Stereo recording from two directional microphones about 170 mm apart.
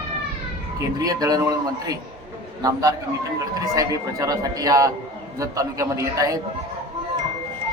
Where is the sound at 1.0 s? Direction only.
20° right (ahead or behind).